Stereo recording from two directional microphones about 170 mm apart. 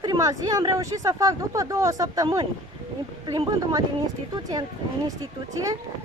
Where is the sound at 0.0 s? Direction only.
20° right (ahead or behind).